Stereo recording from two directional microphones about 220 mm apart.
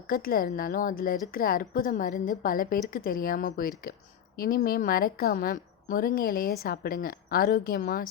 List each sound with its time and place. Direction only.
0.1 s a woman's voice: 40° left (ahead or behind)